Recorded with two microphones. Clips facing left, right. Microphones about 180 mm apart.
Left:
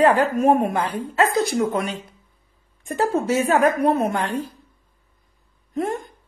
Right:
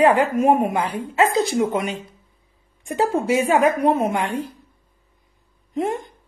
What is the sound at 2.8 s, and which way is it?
A woman's voice, 15° right (ahead or behind).